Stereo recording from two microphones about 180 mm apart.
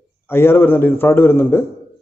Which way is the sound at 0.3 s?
15° left (ahead or behind).